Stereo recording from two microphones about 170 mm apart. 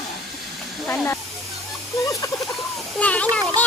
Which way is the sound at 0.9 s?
15° left (ahead or behind).